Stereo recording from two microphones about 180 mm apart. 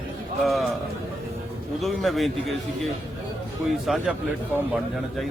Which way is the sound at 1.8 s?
Centre (ahead or behind).